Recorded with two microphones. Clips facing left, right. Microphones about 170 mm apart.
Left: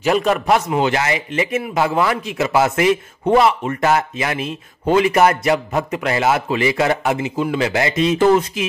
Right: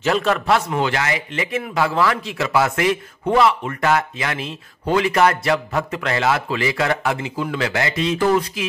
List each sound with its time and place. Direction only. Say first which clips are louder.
0.0 s a man's voice: left 2 dB; 15° left (ahead or behind)